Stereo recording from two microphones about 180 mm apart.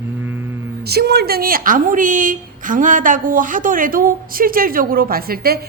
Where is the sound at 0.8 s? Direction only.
65° right (ahead or behind).